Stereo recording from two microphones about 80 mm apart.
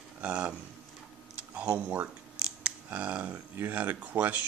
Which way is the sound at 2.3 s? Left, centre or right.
Centre.